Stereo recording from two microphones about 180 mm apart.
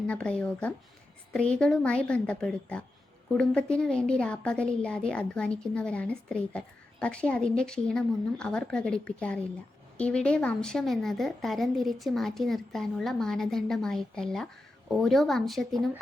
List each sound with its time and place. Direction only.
0.1 s a woman's voice: 5° left (ahead or behind)